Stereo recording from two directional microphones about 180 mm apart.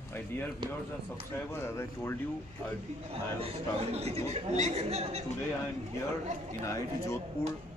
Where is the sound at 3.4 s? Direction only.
35° right (ahead or behind).